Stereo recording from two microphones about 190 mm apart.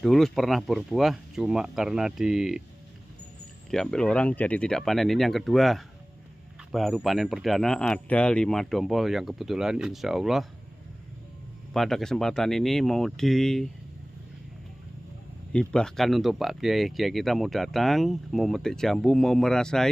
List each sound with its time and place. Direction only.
0.0 s speech: centre (ahead or behind)
3.7 s speech: 5° left (ahead or behind)
11.7 s speech: centre (ahead or behind)
15.5 s speech: 5° left (ahead or behind)